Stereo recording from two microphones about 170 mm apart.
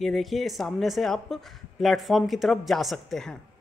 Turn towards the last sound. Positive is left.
turn(degrees=0)  # may be behind; listen again after turning